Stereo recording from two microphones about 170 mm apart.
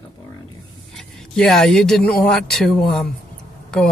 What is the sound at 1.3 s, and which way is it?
Speech, 5° left (ahead or behind).